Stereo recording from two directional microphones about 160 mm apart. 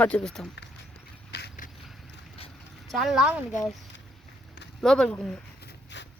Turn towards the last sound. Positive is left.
turn(degrees=5)  # may be behind; listen again after turning